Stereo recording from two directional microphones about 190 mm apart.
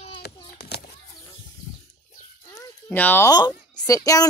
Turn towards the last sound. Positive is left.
turn(degrees=20)  # may be behind; listen again after turning